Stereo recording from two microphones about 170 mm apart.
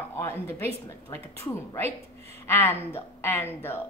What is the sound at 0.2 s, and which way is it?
A woman's voice, 15° left (ahead or behind).